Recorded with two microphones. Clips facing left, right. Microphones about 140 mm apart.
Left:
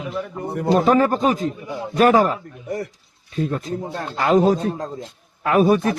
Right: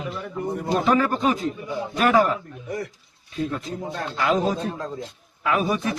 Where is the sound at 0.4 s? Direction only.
70° left (ahead or behind).